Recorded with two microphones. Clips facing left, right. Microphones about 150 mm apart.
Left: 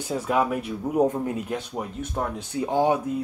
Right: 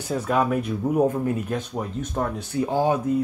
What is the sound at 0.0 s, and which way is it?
Speech, 15° left (ahead or behind).